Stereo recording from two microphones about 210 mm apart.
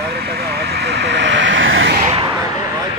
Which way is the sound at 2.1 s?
20° right (ahead or behind).